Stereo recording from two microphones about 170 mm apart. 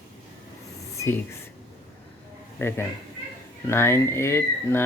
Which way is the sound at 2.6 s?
15° left (ahead or behind).